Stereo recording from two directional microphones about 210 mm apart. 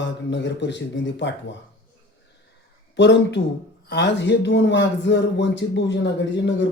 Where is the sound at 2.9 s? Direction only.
55° left (ahead or behind).